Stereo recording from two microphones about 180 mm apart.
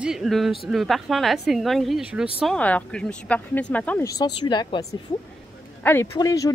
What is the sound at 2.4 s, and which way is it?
Speech, 5° left (ahead or behind).